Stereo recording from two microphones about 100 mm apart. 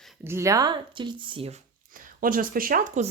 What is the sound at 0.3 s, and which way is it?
Speech, 30° right (ahead or behind).